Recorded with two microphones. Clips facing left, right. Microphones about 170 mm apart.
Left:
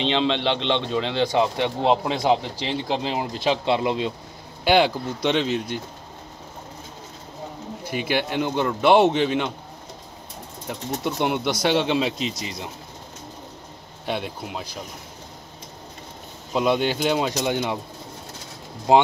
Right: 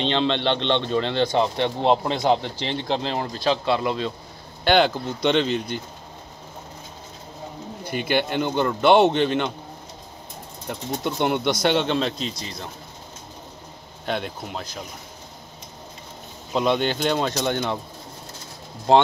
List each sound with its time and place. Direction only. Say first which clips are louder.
0.0 s a man's voice: even; centre (ahead or behind)
3.3 s speech: even; 20° left (ahead or behind)
4.6 s a man's voice: even; 5° left (ahead or behind)
7.9 s a man's voice: right 1 dB; centre (ahead or behind)
10.7 s a man's voice: even; centre (ahead or behind)
14.0 s a man's voice: even; 5° left (ahead or behind)
16.5 s a man's voice: even; 5° left (ahead or behind)
18.9 s speech: even; 10° left (ahead or behind)